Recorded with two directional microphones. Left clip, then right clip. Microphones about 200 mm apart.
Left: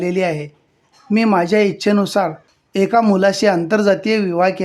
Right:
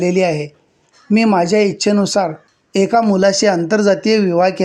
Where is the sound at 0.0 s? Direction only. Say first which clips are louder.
Right 3 dB; 10° right (ahead or behind).